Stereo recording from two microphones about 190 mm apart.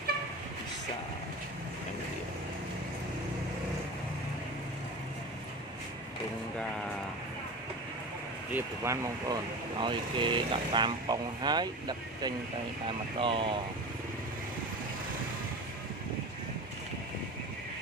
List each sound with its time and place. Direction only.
8.5 s speech: 15° right (ahead or behind)